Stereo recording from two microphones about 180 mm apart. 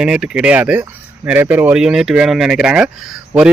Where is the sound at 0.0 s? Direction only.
5° right (ahead or behind).